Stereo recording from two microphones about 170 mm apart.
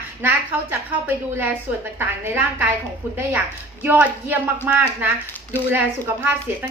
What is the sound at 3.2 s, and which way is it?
A woman's voice, 10° right (ahead or behind).